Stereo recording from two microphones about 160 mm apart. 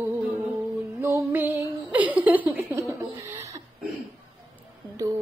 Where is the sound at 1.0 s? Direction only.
15° right (ahead or behind).